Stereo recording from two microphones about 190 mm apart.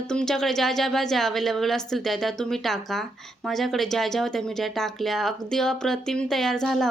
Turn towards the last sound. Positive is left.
turn(degrees=0)  # may be behind; listen again after turning